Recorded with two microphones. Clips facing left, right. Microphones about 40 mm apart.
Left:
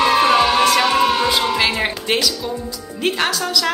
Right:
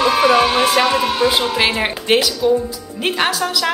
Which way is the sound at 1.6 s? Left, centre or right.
Right.